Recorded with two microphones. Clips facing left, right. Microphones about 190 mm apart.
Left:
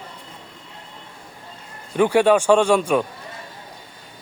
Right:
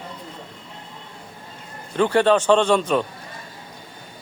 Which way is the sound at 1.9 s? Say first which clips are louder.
Left 2 dB; 10° left (ahead or behind).